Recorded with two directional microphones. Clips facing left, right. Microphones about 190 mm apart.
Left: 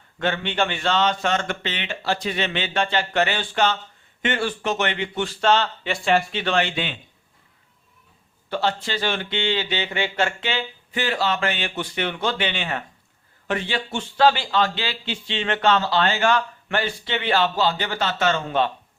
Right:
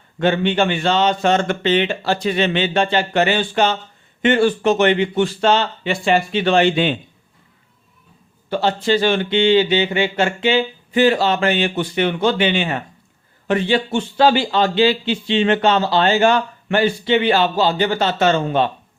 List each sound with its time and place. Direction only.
0.2 s speech: 15° right (ahead or behind)
4.2 s speech: 25° right (ahead or behind)
8.4 s speech: 15° right (ahead or behind)
10.9 s speech: 25° right (ahead or behind)
13.5 s speech: 25° right (ahead or behind)